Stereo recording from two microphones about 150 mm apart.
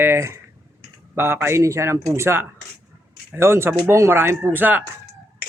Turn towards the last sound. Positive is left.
turn(degrees=-10)  # may be behind; listen again after turning